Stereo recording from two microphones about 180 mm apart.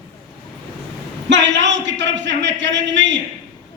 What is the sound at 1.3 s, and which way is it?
A man's voice, 80° right.